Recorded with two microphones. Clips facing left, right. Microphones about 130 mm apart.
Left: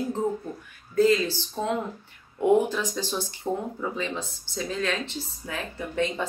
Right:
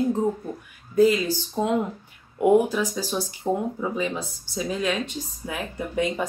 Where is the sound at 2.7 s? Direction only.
10° right (ahead or behind).